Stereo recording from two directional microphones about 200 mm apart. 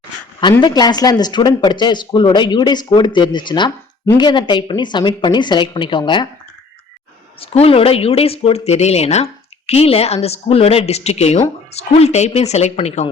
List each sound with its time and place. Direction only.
0.6 s speech: 20° left (ahead or behind)
7.4 s speech: 30° left (ahead or behind)